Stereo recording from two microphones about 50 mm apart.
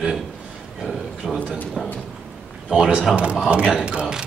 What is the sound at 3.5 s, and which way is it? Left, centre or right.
Speech, centre.